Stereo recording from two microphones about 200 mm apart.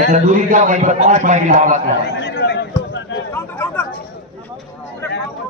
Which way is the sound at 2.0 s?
55° left (ahead or behind).